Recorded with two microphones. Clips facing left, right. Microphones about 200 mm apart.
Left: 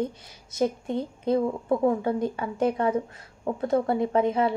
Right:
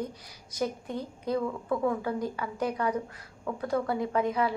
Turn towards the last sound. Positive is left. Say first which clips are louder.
# left 5 dB
turn(degrees=25)  # may be behind; listen again after turning